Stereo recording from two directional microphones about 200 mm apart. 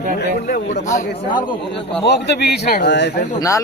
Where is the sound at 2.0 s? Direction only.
55° left (ahead or behind).